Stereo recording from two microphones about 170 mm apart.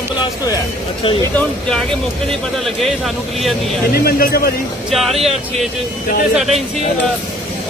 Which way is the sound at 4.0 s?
60° left (ahead or behind).